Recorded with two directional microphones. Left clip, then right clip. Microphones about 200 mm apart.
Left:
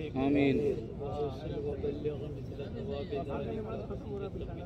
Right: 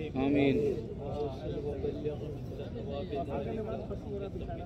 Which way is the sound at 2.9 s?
50° left (ahead or behind).